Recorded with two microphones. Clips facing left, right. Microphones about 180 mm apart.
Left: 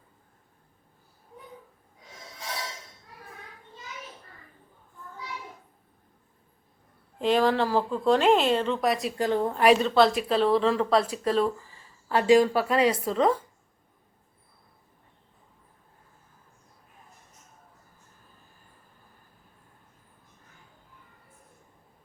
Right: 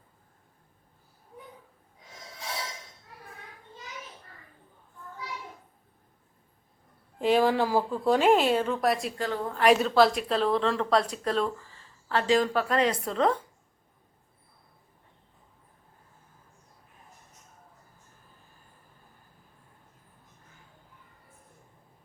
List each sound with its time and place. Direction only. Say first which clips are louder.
7.2 s speech: even; 10° right (ahead or behind)
9.1 s a woman's voice: left 6 dB; 15° left (ahead or behind)
9.6 s a woman's voice: even; centre (ahead or behind)